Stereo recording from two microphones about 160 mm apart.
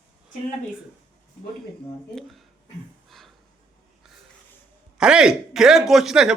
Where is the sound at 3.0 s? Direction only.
Centre (ahead or behind).